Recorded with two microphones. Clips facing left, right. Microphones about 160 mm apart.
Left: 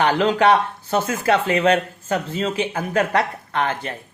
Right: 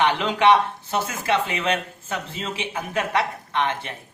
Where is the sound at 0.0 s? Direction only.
40° left (ahead or behind).